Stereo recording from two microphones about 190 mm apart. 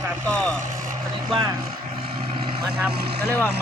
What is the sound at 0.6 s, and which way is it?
Vehicle, 45° right (ahead or behind).